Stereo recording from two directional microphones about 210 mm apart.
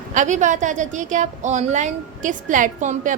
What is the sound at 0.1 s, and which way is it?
A woman's voice, 35° right (ahead or behind).